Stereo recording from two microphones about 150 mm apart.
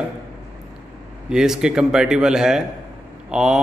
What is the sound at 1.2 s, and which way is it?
Mantra, 5° right (ahead or behind).